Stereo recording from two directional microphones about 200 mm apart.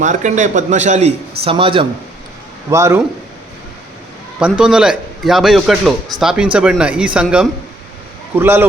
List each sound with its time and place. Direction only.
0.0 s a man's voice: 40° right (ahead or behind)
2.6 s a man's voice: 15° right (ahead or behind)
4.4 s a man's voice: 5° right (ahead or behind)